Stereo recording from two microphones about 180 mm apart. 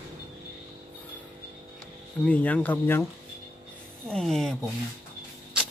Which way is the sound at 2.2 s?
10° left (ahead or behind).